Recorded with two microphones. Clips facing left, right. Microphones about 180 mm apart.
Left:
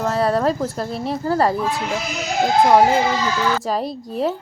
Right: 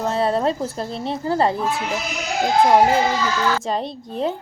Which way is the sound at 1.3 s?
25° right (ahead or behind).